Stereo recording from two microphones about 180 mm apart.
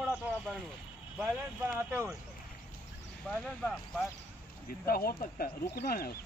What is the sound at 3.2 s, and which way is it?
Speech, 5° left (ahead or behind).